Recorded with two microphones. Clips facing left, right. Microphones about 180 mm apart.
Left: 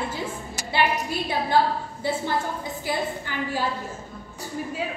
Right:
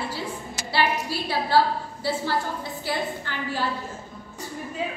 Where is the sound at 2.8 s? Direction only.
15° left (ahead or behind).